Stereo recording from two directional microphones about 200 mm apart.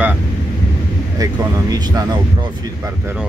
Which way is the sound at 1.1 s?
20° right (ahead or behind).